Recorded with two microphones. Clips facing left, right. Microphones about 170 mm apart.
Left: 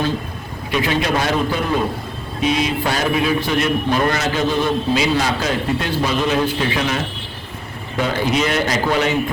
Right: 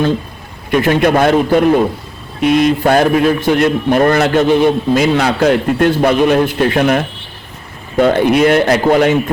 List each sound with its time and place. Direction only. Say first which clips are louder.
0.7 s a man's voice: right 8 dB; 50° right (ahead or behind)